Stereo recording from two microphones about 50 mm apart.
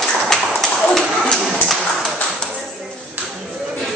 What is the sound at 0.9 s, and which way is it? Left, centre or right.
Speech, centre.